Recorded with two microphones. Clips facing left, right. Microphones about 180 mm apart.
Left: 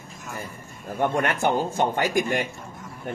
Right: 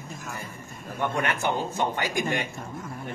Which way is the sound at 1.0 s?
50° left (ahead or behind).